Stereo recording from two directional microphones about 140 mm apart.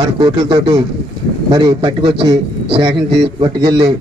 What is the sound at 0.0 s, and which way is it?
A man's voice, 35° right (ahead or behind).